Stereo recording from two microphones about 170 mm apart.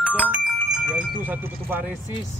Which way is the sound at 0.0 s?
5° right (ahead or behind).